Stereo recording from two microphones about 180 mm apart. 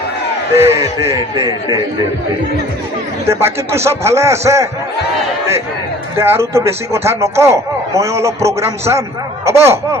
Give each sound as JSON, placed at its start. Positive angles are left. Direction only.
{"t": 0.5, "sound": "a man's voice", "side_deg": -15}
{"t": 3.2, "sound": "a man's voice", "side_deg": -15}
{"t": 6.1, "sound": "a man's voice", "side_deg": -15}